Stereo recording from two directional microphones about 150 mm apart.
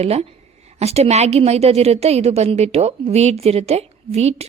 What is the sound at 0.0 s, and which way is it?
A woman's voice, 45° right (ahead or behind).